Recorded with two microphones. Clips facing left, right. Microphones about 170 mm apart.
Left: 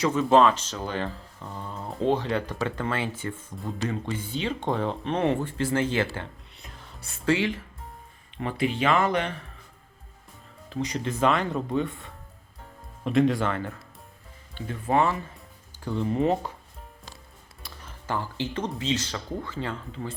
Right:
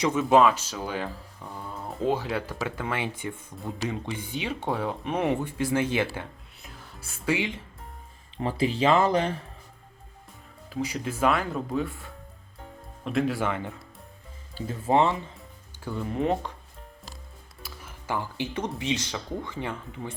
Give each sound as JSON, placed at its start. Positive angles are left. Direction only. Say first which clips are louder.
{"t": 0.0, "sound": "speech", "louder": "even", "side_deg": -10}
{"t": 6.6, "sound": "music", "louder": "right 1 dB", "side_deg": 0}
{"t": 7.3, "sound": "speech", "louder": "left 3 dB", "side_deg": -15}
{"t": 8.4, "sound": "speech", "louder": "right 1 dB", "side_deg": -35}
{"t": 10.7, "sound": "speech", "louder": "left 1 dB", "side_deg": -5}
{"t": 14.5, "sound": "speech", "louder": "right 1 dB", "side_deg": -25}
{"t": 15.4, "sound": "music", "louder": "right 1 dB", "side_deg": -5}
{"t": 17.6, "sound": "music", "louder": "right 1 dB", "side_deg": -10}
{"t": 18.8, "sound": "speech", "louder": "left 1 dB", "side_deg": -15}